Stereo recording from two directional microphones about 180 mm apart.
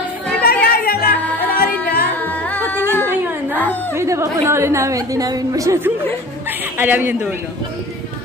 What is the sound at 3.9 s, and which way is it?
A woman's voice, 15° right (ahead or behind).